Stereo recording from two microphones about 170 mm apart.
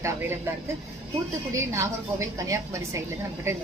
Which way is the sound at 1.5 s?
20° right (ahead or behind).